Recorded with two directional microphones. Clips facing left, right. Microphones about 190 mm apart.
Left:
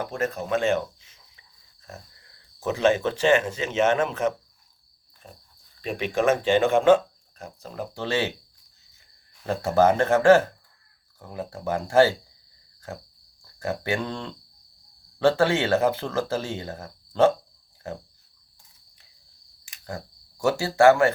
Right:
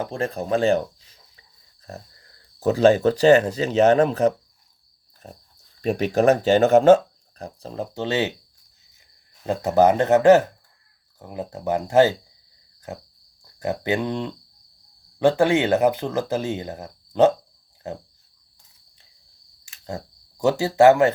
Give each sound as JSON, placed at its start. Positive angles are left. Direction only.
{"t": 0.0, "sound": "speech", "side_deg": -30}
{"t": 9.5, "sound": "speech", "side_deg": -20}
{"t": 20.4, "sound": "speech", "side_deg": -20}